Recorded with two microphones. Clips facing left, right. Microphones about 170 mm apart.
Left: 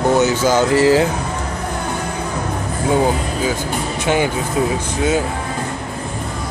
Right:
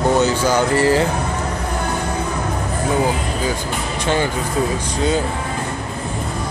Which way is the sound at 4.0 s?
10° left (ahead or behind).